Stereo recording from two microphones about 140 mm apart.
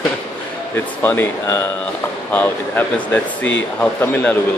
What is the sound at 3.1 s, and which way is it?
Speech, 10° left (ahead or behind).